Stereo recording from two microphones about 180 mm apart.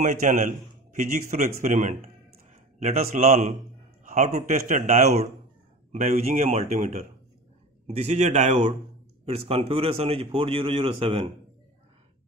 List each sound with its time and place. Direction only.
0.0 s a man's voice: 45° right (ahead or behind)